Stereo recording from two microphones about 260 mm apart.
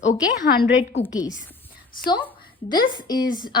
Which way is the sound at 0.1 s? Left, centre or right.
Left.